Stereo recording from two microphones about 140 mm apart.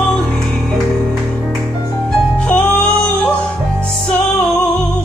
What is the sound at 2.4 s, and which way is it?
Music, 5° left (ahead or behind).